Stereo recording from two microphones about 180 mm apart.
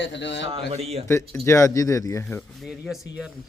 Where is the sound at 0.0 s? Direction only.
80° left.